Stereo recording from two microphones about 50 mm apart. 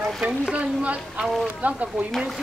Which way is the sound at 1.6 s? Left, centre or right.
Right.